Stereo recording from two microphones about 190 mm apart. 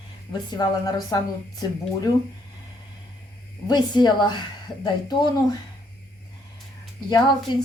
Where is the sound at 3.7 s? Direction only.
25° left (ahead or behind).